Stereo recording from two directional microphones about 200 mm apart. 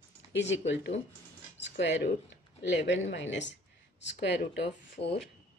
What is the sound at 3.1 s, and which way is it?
Speech, 60° left (ahead or behind).